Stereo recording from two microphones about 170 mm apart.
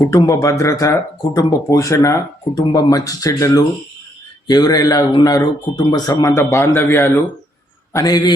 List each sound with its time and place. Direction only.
0.1 s speech: 20° left (ahead or behind)